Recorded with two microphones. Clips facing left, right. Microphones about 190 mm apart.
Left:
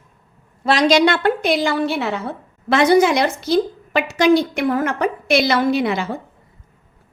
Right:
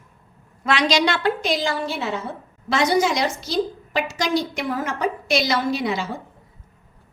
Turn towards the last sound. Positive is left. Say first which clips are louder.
# left 5 dB
turn(degrees=60)  # may be behind; listen again after turning